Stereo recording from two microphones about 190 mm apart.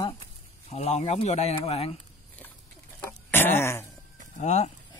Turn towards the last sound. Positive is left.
turn(degrees=35)  # may be behind; listen again after turning